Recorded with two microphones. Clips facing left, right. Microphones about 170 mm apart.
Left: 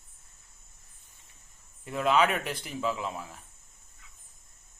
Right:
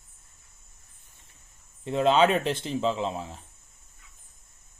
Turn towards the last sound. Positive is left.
turn(degrees=-25)  # may be behind; listen again after turning